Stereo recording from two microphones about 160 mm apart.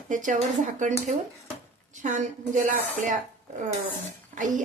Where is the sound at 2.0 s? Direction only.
50° right (ahead or behind).